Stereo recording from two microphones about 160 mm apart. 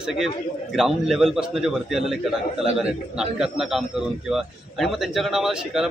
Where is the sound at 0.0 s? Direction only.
Centre (ahead or behind).